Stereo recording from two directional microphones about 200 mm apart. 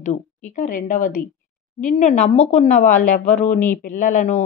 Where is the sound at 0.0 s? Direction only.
40° left (ahead or behind).